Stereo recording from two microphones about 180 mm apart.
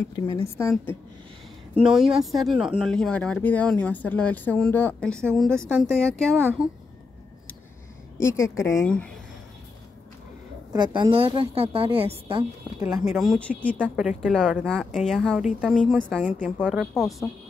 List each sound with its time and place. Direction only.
1.8 s speech: 5° right (ahead or behind)
8.2 s a woman's voice: 15° left (ahead or behind)
10.7 s a woman's voice: 25° right (ahead or behind)
12.8 s speech: 5° right (ahead or behind)
16.3 s a woman's voice: 5° right (ahead or behind)